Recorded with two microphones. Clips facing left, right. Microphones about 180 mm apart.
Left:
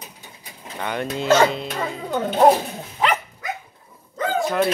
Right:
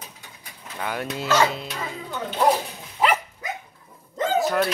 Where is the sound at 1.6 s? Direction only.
50° left (ahead or behind).